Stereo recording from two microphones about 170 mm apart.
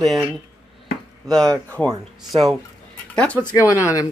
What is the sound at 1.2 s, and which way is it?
Speech, 5° left (ahead or behind).